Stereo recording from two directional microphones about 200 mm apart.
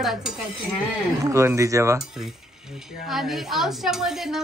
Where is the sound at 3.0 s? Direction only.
Centre (ahead or behind).